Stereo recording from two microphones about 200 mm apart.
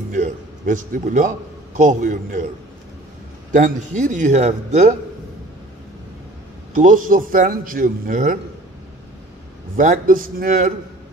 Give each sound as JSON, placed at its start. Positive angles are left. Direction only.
{"t": 0.1, "sound": "a man's voice", "side_deg": -40}
{"t": 3.5, "sound": "a man's voice", "side_deg": -40}
{"t": 6.7, "sound": "a man's voice", "side_deg": -40}
{"t": 9.8, "sound": "a man's voice", "side_deg": -40}